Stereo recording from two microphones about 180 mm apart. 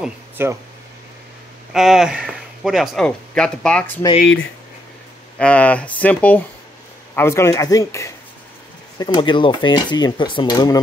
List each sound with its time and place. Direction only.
0.0 s speech: 15° right (ahead or behind)
1.7 s speech: centre (ahead or behind)
5.4 s speech: 10° left (ahead or behind); by 10.8 s 25° left (ahead or behind)